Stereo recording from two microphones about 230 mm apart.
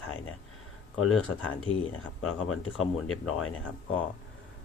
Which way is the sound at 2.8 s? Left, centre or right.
Centre.